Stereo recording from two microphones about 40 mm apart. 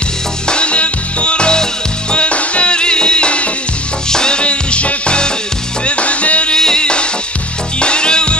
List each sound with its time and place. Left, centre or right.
0.5 s music: left
6.5 s music: centre